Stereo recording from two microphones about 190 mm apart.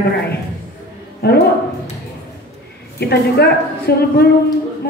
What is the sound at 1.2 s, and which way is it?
Speech, 60° left (ahead or behind).